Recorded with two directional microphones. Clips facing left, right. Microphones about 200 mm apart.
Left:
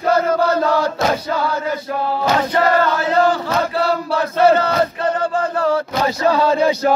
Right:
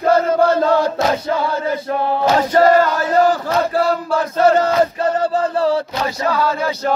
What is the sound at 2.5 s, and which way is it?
Chant, 40° right (ahead or behind).